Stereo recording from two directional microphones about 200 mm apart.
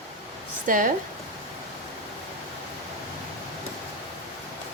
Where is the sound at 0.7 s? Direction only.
40° right (ahead or behind).